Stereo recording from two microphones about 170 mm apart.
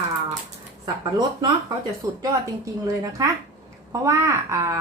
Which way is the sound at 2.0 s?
20° right (ahead or behind).